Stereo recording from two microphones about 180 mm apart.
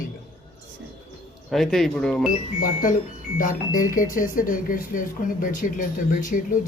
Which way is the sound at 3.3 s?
50° left (ahead or behind).